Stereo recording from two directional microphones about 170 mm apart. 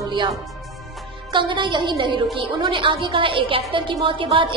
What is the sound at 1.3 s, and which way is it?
A woman's voice, 30° right (ahead or behind).